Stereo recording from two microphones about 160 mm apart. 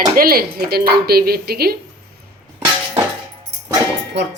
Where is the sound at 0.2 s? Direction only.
70° right (ahead or behind).